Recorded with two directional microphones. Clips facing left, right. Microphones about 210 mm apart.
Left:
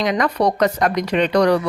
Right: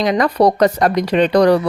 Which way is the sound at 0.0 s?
35° right (ahead or behind).